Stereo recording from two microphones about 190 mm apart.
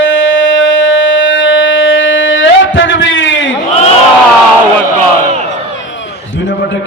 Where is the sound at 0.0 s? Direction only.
90° left.